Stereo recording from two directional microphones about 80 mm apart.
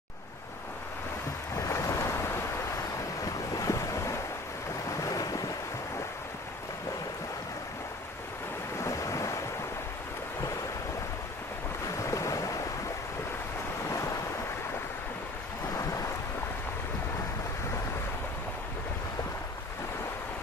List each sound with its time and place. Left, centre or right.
1.5 s boat: left
3.5 s waves: left
5.0 s ocean: left
8.7 s ocean: left
12.0 s waves: left
13.8 s waves: left
15.7 s thunder: left